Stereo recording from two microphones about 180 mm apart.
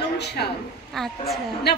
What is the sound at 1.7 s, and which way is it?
Speech, 65° left (ahead or behind).